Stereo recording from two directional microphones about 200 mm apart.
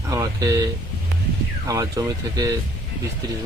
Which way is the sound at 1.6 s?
15° right (ahead or behind).